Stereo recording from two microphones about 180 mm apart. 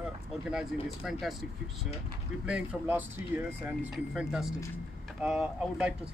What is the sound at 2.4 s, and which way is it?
Speech, 10° right (ahead or behind).